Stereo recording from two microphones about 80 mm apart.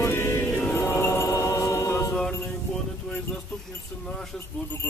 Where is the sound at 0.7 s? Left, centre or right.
Left.